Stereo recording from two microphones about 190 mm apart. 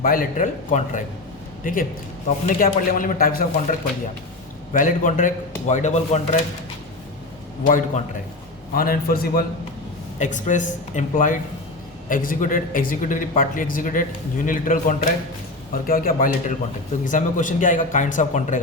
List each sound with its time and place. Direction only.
0.0 s a man's voice: 50° left (ahead or behind)
7.6 s a man's voice: 45° left (ahead or behind)
10.2 s a man's voice: 40° left (ahead or behind)